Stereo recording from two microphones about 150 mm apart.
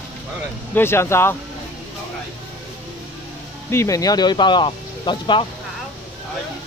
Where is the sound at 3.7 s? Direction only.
20° left (ahead or behind).